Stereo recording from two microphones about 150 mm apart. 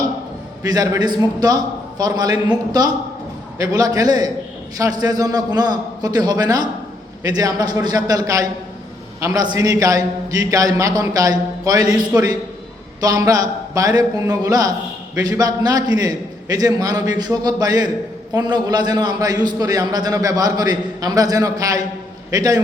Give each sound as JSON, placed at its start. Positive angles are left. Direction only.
{"t": 0.6, "sound": "a man's voice", "side_deg": -25}